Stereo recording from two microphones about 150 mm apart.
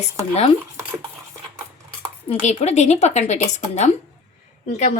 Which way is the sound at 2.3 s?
50° left (ahead or behind).